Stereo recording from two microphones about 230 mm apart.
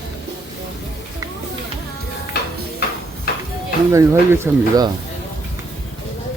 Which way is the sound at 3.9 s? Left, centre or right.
Centre.